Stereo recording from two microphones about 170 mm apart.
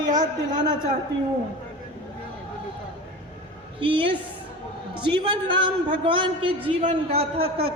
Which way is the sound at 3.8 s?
30° right (ahead or behind).